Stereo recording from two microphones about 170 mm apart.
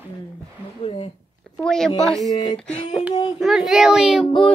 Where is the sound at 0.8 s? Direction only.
30° left (ahead or behind).